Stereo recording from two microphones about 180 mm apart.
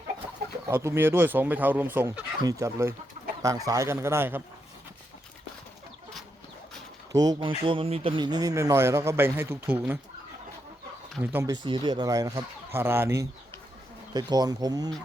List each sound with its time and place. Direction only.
0.7 s speech: 15° right (ahead or behind)
7.1 s speech: 20° right (ahead or behind)
11.3 s speech: 10° right (ahead or behind)
11.5 s speech: 25° right (ahead or behind)